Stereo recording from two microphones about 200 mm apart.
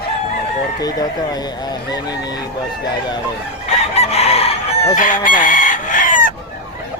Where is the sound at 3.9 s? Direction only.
30° left (ahead or behind).